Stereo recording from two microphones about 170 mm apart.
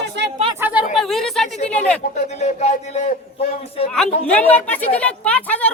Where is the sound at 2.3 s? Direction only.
40° left (ahead or behind).